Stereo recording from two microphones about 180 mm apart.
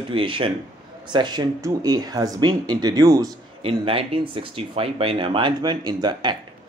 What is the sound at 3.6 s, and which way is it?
Speech, 30° right (ahead or behind).